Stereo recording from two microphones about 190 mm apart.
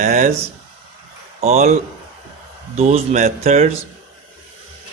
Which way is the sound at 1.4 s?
35° right (ahead or behind).